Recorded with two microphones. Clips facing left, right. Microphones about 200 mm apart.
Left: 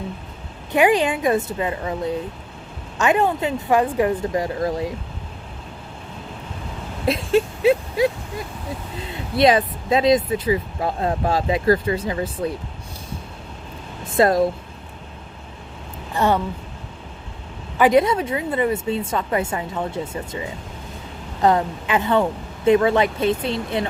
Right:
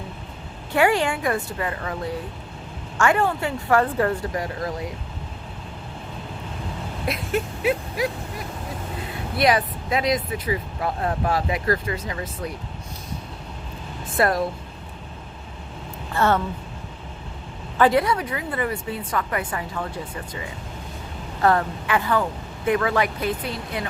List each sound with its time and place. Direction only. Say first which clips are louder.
0.7 s a woman's voice: left 3 dB; 15° left (ahead or behind)
7.1 s a sound: left 7 dB; 25° left (ahead or behind)
9.3 s a woman's voice: left 4 dB; 25° left (ahead or behind)
14.1 s speech: left 5 dB; 25° left (ahead or behind)
16.1 s speech: left 1 dB; 15° left (ahead or behind)
17.7 s a woman's voice: left 3 dB; 20° left (ahead or behind)
21.4 s a woman's voice: left 2 dB; 20° left (ahead or behind)